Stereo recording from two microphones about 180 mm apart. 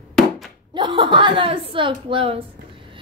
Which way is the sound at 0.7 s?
25° right (ahead or behind).